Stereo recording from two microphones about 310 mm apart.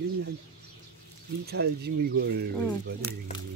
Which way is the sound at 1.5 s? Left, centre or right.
Right.